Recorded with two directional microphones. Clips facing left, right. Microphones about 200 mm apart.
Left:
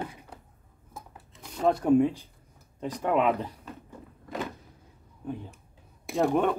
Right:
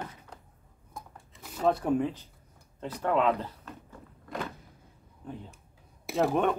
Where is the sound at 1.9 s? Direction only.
10° left (ahead or behind).